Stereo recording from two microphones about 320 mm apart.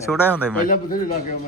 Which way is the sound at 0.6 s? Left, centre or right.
Left.